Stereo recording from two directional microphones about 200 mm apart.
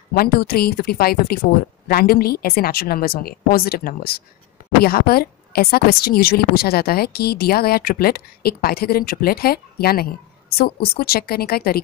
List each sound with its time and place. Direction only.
0.1 s a woman's voice: 50° left (ahead or behind)